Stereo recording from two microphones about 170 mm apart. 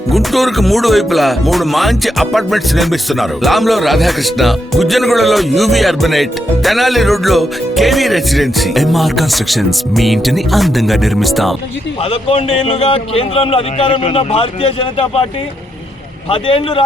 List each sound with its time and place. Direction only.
0.1 s speech: centre (ahead or behind)
12.1 s speech: 35° left (ahead or behind)
16.3 s speech: 30° left (ahead or behind)